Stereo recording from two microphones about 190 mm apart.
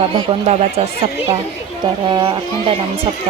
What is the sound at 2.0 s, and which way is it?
Speech, 25° right (ahead or behind).